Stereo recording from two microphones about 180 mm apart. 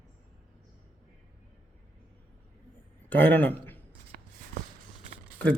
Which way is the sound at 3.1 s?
10° left (ahead or behind).